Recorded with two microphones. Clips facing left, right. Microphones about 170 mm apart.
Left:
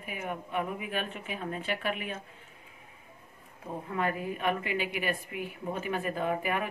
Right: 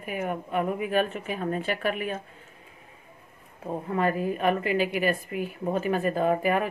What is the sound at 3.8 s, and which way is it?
A woman's voice, 40° right (ahead or behind).